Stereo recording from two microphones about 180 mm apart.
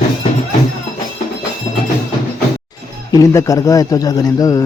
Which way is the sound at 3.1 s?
20° left (ahead or behind).